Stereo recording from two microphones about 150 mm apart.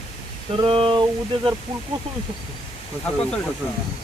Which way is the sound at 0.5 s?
35° right (ahead or behind).